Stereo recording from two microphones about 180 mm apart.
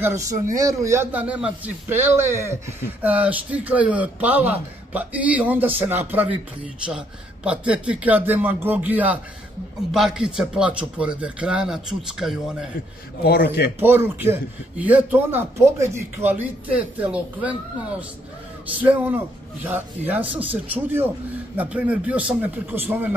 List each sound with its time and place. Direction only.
0.6 s a man's voice: 15° right (ahead or behind)
13.2 s speech: 60° left (ahead or behind)
13.7 s a man's voice: 10° right (ahead or behind)
18.8 s a man's voice: 10° right (ahead or behind)